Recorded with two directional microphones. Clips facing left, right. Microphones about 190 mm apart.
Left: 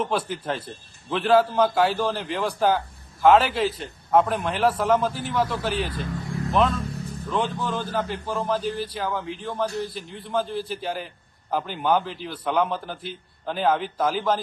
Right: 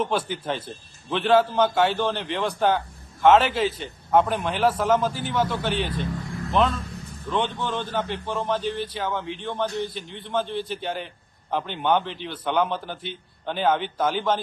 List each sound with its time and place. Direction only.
0.0 s a man's voice: 5° left (ahead or behind)